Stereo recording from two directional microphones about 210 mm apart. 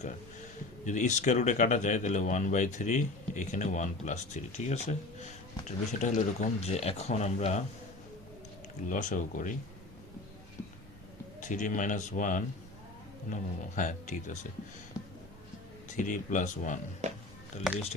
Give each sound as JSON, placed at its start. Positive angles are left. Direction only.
{"t": 0.9, "sound": "speech", "side_deg": 35}
{"t": 8.9, "sound": "speech", "side_deg": 35}
{"t": 11.3, "sound": "speech", "side_deg": 35}
{"t": 16.0, "sound": "speech", "side_deg": 35}
{"t": 17.0, "sound": "music", "side_deg": -35}